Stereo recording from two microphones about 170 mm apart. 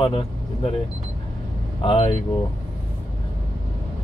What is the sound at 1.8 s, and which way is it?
Speech, 30° left (ahead or behind).